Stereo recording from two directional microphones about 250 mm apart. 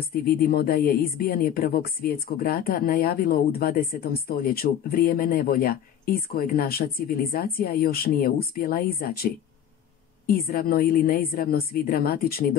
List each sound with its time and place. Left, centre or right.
0.0 s speech: left